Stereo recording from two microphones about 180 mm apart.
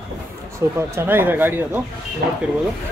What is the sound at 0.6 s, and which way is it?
Speech, 15° right (ahead or behind).